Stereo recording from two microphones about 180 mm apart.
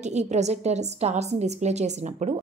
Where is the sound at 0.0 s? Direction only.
40° right (ahead or behind).